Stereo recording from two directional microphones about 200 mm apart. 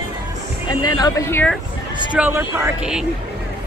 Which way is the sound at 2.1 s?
10° right (ahead or behind).